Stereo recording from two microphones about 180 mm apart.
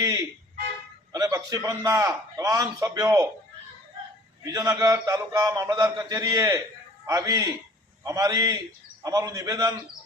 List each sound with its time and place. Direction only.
0.0 s a sound: 20° right (ahead or behind)
1.1 s a man's voice: 20° right (ahead or behind)
4.5 s a man's voice: 20° right (ahead or behind)